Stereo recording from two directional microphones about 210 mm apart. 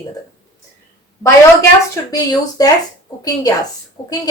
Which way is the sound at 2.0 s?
15° left (ahead or behind).